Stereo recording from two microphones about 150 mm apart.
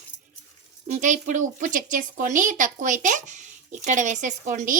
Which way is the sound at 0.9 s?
55° right (ahead or behind).